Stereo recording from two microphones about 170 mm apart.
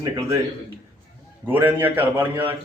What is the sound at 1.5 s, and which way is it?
Speech, 10° right (ahead or behind).